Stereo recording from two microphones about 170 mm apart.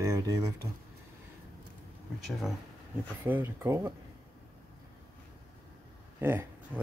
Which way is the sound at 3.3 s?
10° right (ahead or behind).